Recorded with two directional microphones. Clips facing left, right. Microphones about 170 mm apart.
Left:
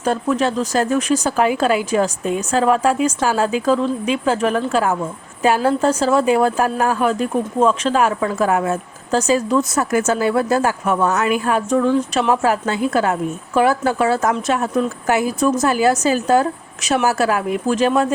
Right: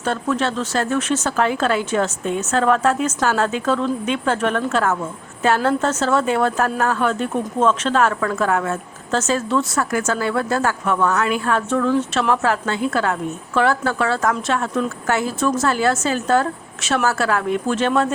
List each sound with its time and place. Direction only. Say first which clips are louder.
0.1 s a woman's voice: left 3 dB; 15° left (ahead or behind)
9.2 s speech: left 4 dB; 5° left (ahead or behind)
9.7 s a woman's voice: left 3 dB; 20° left (ahead or behind)